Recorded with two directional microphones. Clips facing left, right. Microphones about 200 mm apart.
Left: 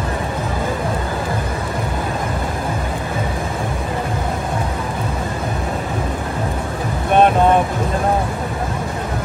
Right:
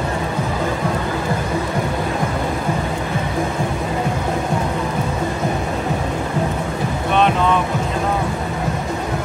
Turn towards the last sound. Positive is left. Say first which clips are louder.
# left 4 dB
turn(degrees=50)  # may be behind; listen again after turning